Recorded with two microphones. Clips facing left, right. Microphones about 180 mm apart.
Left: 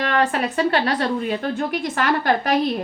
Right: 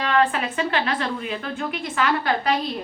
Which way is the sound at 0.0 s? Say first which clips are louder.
Left 1 dB; 45° left (ahead or behind).